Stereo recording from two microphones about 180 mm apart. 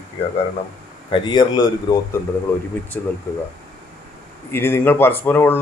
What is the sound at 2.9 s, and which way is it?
Speech, 10° left (ahead or behind).